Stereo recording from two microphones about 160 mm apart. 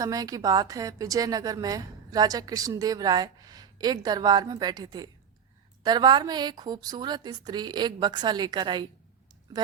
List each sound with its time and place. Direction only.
0.0 s a woman's voice: 20° right (ahead or behind)